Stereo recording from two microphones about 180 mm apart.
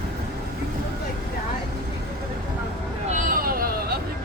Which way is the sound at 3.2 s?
55° right (ahead or behind).